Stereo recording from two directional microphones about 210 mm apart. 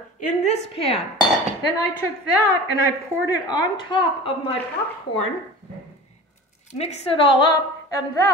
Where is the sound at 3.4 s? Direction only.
20° left (ahead or behind).